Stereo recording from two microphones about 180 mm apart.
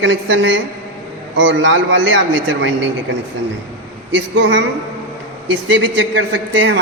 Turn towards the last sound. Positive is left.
turn(degrees=-85)